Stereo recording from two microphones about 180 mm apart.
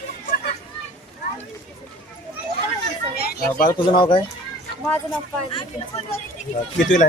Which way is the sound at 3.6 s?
25° left (ahead or behind).